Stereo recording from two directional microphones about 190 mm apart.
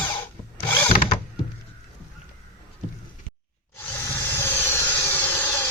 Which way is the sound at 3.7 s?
15° left (ahead or behind).